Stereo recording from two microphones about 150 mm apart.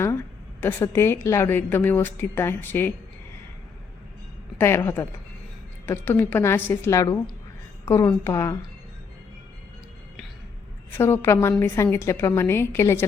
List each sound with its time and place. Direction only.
0.6 s a woman's voice: 15° left (ahead or behind)
4.5 s a woman's voice: 15° left (ahead or behind)
10.9 s a woman's voice: 15° left (ahead or behind)